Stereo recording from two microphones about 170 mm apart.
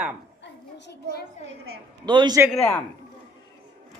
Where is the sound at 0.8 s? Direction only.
80° left.